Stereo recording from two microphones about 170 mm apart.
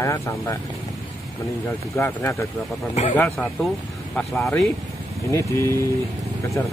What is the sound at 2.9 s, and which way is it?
Speech, 40° left (ahead or behind).